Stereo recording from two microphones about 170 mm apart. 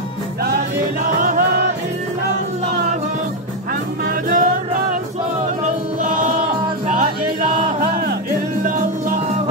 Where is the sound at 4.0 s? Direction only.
50° right (ahead or behind).